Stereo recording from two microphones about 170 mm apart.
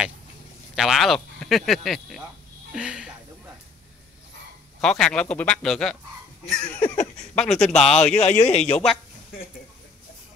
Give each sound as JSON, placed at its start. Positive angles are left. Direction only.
{"t": 0.7, "sound": "speech", "side_deg": 0}
{"t": 4.8, "sound": "speech", "side_deg": 5}
{"t": 8.2, "sound": "speech", "side_deg": 40}
{"t": 8.5, "sound": "speech", "side_deg": 5}